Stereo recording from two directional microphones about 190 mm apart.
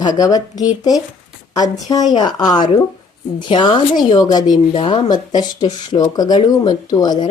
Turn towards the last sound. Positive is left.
turn(degrees=20)  # may be behind; listen again after turning